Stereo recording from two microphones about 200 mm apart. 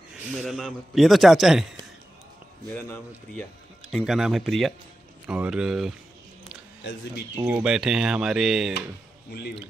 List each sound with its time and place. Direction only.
0.1 s a man's voice: centre (ahead or behind)
3.9 s a man's voice: centre (ahead or behind)
6.8 s speech: 60° left (ahead or behind)
7.3 s a man's voice: 5° right (ahead or behind)
9.3 s speech: 55° left (ahead or behind)